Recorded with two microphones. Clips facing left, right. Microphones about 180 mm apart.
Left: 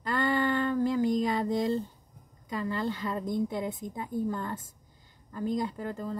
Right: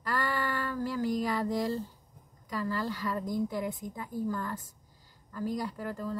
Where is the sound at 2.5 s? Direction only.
25° left (ahead or behind).